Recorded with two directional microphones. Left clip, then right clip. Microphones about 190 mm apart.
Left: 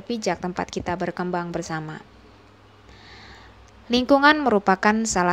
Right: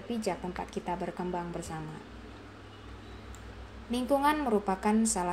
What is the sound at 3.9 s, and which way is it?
A woman's voice, 45° left (ahead or behind).